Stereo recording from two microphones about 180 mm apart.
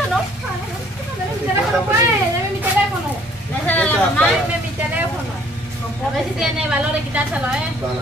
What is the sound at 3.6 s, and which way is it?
Vehicle, 10° left (ahead or behind).